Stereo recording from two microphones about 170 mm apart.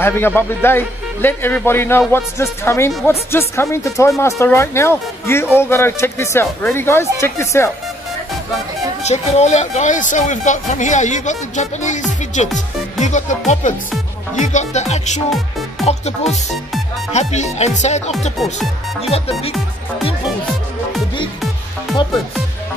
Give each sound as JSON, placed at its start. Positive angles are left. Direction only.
{"t": 0.0, "sound": "a man's voice", "side_deg": 15}
{"t": 9.0, "sound": "speech", "side_deg": 40}